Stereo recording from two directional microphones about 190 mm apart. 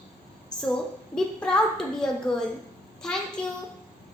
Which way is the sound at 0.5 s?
5° left (ahead or behind).